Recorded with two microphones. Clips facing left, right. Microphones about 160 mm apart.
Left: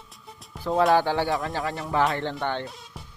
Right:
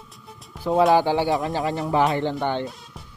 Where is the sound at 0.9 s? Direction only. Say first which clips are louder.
Right 3 dB; 15° right (ahead or behind).